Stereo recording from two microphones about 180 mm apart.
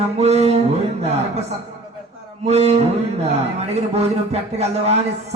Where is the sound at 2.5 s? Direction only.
35° right (ahead or behind).